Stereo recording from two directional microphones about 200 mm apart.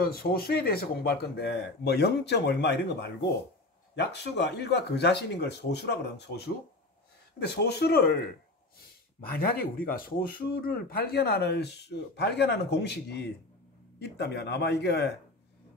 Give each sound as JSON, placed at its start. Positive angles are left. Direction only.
{"t": 0.0, "sound": "speech", "side_deg": 50}
{"t": 9.3, "sound": "speech", "side_deg": 50}